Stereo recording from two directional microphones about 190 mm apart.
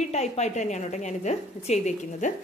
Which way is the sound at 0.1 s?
35° left (ahead or behind).